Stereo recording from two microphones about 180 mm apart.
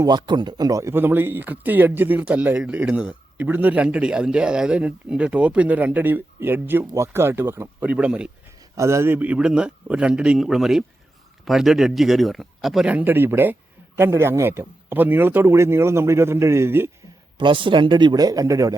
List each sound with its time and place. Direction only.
0.0 s a man's voice: 25° right (ahead or behind)
17.3 s speech: 25° right (ahead or behind)